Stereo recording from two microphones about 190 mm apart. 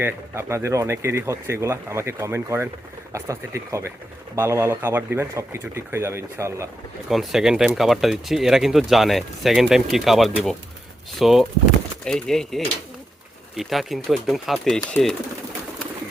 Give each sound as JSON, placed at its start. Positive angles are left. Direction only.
{"t": 0.0, "sound": "speech", "side_deg": -15}
{"t": 7.1, "sound": "speech", "side_deg": 0}